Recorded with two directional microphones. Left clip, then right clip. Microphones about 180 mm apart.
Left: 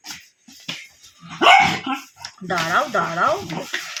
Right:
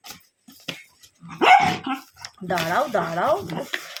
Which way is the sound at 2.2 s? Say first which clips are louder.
Left 1 dB; 20° right (ahead or behind).